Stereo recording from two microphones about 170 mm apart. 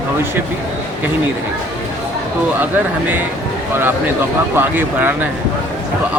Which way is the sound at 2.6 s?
10° right (ahead or behind).